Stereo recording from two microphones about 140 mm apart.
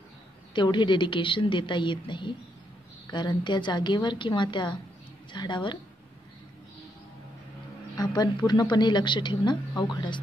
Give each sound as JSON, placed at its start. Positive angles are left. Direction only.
{"t": 0.5, "sound": "a woman's voice", "side_deg": 35}
{"t": 8.0, "sound": "a woman's voice", "side_deg": 30}